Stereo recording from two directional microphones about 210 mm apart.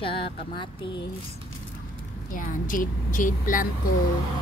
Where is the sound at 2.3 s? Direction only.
40° left (ahead or behind).